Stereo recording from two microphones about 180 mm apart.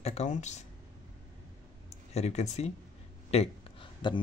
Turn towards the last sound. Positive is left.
turn(degrees=30)  # may be behind; listen again after turning